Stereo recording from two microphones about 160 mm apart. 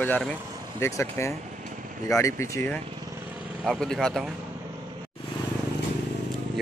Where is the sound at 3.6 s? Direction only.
5° left (ahead or behind).